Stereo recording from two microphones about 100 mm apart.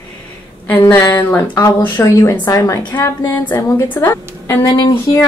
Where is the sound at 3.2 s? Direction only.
20° left (ahead or behind).